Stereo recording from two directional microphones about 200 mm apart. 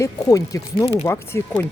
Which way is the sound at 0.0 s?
15° left (ahead or behind).